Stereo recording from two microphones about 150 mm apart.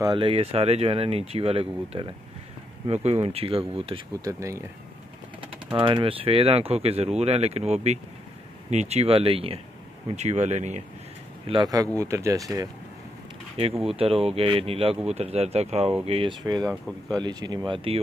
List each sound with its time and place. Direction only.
0.0 s speech: 35° right (ahead or behind)
4.2 s speech: 20° right (ahead or behind)
5.4 s speech: 35° right (ahead or behind); by 10.8 s 50° right (ahead or behind)
11.4 s speech: 30° right (ahead or behind)
13.9 s speech: 40° right (ahead or behind)
16.6 s speech: 5° left (ahead or behind)
17.2 s speech: 30° right (ahead or behind)